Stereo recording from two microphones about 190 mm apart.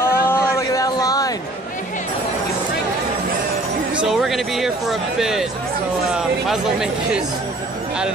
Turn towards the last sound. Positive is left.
turn(degrees=-5)  # may be behind; listen again after turning